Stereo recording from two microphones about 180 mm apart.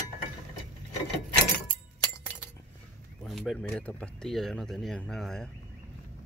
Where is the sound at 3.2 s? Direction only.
Centre (ahead or behind).